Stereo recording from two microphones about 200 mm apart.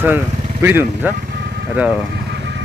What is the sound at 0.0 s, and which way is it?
Speech, 10° right (ahead or behind).